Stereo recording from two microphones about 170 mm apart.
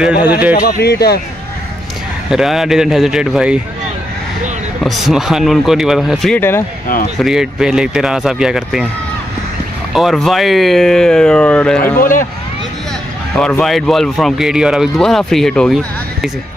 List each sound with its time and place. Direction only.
0.0 s speech: 5° right (ahead or behind)
0.6 s speech: 65° left (ahead or behind)
2.2 s speech: centre (ahead or behind)
4.8 s speech: centre (ahead or behind)
9.9 s speech: centre (ahead or behind)
12.0 s speech: 50° left (ahead or behind)
13.4 s speech: 5° left (ahead or behind)